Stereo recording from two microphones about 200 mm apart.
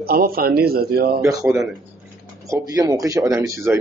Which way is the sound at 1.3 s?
15° right (ahead or behind).